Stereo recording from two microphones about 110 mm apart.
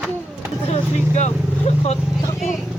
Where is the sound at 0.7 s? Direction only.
85° left.